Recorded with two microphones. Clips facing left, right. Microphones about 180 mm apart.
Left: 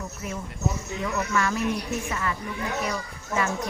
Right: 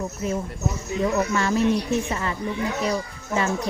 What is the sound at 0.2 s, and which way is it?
Speech, 25° right (ahead or behind).